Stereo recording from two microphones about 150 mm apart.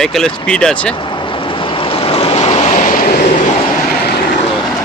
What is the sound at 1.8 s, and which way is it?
Vehicle, 40° left (ahead or behind).